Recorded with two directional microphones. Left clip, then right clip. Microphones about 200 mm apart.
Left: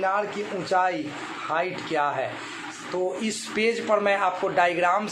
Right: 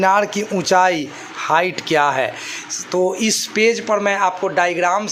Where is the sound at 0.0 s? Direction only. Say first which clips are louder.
Right 10 dB; 50° right (ahead or behind).